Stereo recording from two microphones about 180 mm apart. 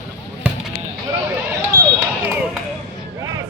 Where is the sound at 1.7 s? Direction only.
15° right (ahead or behind).